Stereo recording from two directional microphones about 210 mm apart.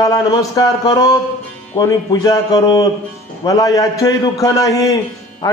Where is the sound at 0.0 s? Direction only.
15° left (ahead or behind).